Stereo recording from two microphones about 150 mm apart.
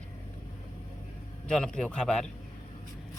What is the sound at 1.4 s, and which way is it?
Speech, 5° left (ahead or behind).